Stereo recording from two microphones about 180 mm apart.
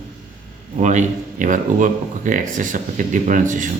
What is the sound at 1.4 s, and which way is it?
Speech, 45° right (ahead or behind).